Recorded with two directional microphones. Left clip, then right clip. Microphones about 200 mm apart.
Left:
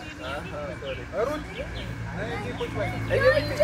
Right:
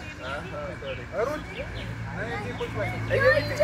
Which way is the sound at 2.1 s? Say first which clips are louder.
Even; 5° left (ahead or behind).